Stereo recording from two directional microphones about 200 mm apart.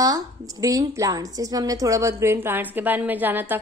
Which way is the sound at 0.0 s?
15° right (ahead or behind).